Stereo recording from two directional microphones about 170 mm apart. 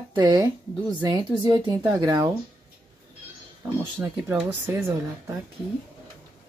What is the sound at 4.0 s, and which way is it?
Speech, 10° right (ahead or behind).